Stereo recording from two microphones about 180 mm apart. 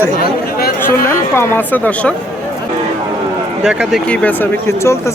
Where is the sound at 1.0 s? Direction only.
10° left (ahead or behind).